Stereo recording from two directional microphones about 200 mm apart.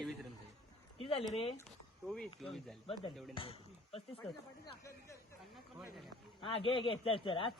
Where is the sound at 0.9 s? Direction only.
25° left (ahead or behind).